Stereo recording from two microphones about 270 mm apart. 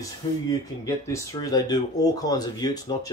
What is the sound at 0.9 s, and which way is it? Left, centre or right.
Speech, centre.